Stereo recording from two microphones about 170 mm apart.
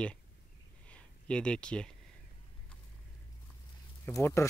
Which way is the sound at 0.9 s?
5° left (ahead or behind).